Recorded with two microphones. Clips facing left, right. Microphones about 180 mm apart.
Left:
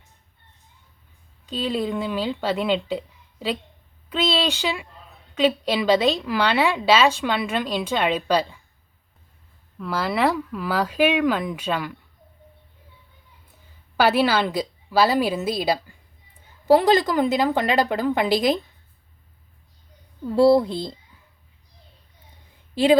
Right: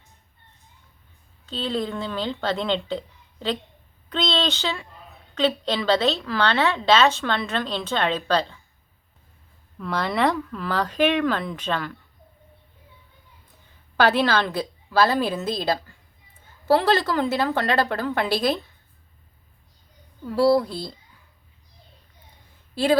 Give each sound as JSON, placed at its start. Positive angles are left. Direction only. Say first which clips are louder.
{"t": 1.5, "sound": "a woman's voice", "louder": "left 2 dB", "side_deg": 10}
{"t": 9.7, "sound": "a woman's voice", "louder": "left 1 dB", "side_deg": 5}
{"t": 13.9, "sound": "a woman's voice", "louder": "left 1 dB", "side_deg": 10}
{"t": 20.2, "sound": "speech", "louder": "left 3 dB", "side_deg": 25}
{"t": 22.7, "sound": "a woman's voice", "louder": "left 4 dB", "side_deg": 15}